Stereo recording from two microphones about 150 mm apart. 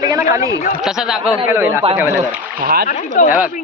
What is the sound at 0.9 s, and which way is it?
Speech, 5° right (ahead or behind).